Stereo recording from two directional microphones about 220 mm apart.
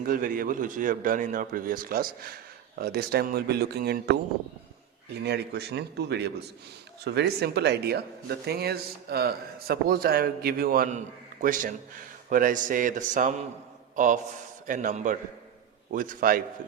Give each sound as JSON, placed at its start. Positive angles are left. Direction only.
{"t": 0.0, "sound": "a man's voice", "side_deg": -40}
{"t": 5.2, "sound": "a man's voice", "side_deg": -50}